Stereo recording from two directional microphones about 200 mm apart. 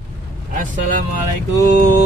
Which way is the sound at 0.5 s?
40° right (ahead or behind).